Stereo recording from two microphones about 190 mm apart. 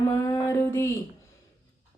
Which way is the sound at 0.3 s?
15° left (ahead or behind).